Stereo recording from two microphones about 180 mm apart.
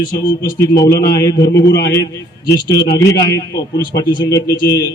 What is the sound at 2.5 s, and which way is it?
Speech, 20° left (ahead or behind).